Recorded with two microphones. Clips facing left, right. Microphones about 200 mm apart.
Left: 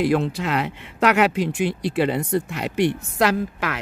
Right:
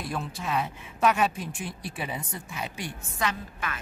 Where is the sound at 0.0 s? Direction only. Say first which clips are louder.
Left 13 dB; 80° left.